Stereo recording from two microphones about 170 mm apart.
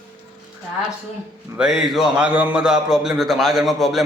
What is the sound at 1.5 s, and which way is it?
A man's voice, 5° right (ahead or behind).